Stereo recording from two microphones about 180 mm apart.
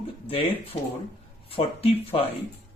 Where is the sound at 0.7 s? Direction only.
35° left (ahead or behind).